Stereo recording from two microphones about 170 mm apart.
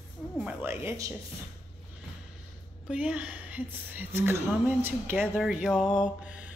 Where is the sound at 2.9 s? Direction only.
10° right (ahead or behind).